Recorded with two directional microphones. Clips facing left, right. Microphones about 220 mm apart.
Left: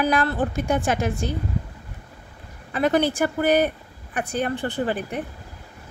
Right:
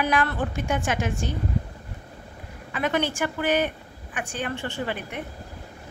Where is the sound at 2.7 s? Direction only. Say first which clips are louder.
Left 5 dB; 35° left (ahead or behind).